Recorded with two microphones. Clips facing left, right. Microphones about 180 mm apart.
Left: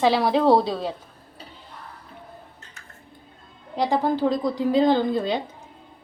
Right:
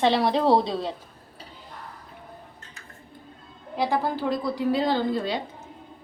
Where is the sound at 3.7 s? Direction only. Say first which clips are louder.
Left 3 dB; 20° left (ahead or behind).